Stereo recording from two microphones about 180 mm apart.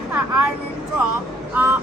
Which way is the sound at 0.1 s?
5° right (ahead or behind).